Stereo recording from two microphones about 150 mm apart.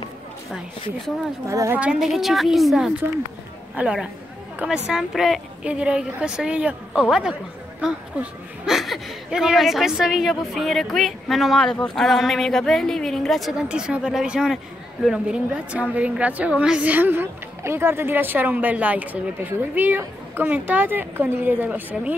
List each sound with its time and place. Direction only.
1.5 s a woman's voice: 20° right (ahead or behind)
1.8 s a woman's voice: 5° right (ahead or behind)